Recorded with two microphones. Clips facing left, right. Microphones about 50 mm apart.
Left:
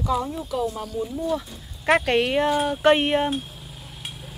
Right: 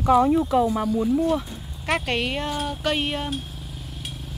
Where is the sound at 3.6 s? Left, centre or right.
Centre.